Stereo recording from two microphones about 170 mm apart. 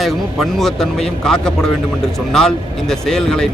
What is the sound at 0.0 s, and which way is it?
Speech, centre (ahead or behind).